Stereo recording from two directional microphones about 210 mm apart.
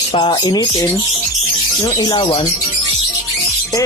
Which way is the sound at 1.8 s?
20° left (ahead or behind).